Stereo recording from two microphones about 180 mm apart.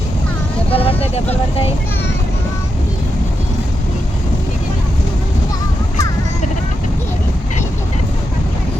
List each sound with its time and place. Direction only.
0.7 s speech: 30° left (ahead or behind)